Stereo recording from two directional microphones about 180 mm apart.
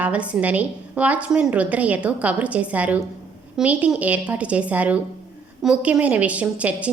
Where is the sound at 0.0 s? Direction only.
5° right (ahead or behind).